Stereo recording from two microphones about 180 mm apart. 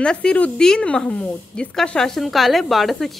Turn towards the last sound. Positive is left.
turn(degrees=0)  # may be behind; listen again after turning